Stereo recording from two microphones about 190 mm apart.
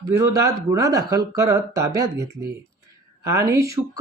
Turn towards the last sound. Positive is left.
turn(degrees=-15)  # may be behind; listen again after turning